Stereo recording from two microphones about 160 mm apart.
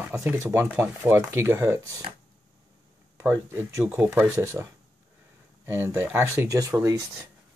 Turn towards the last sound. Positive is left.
turn(degrees=-20)  # may be behind; listen again after turning